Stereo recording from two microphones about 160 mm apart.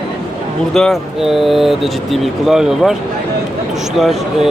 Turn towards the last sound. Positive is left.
turn(degrees=0)  # may be behind; listen again after turning